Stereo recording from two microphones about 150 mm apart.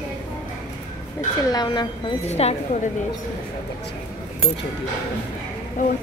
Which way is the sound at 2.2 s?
45° left (ahead or behind).